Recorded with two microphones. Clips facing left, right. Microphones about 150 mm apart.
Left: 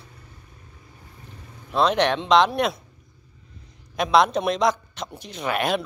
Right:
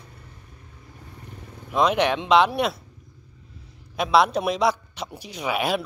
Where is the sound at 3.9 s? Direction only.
5° right (ahead or behind).